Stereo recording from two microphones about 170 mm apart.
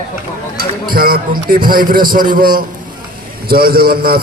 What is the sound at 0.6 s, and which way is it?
A man's voice, 60° right (ahead or behind).